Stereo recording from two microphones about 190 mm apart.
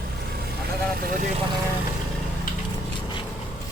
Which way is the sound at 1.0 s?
40° right (ahead or behind).